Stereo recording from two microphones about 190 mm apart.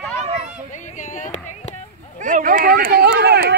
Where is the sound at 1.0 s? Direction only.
40° left (ahead or behind).